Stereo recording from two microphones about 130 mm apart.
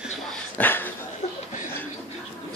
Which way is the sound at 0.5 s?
15° left (ahead or behind).